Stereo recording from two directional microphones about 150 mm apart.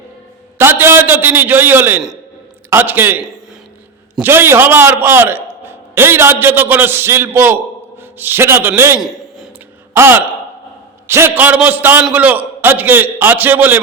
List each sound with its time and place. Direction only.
0.6 s a man's voice: 15° right (ahead or behind)
4.2 s a man's voice: 15° right (ahead or behind)